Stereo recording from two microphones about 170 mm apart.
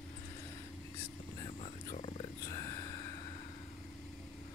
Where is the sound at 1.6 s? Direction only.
35° left (ahead or behind).